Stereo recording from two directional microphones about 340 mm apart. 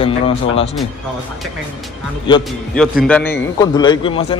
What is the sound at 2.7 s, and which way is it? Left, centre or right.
A man's voice, centre.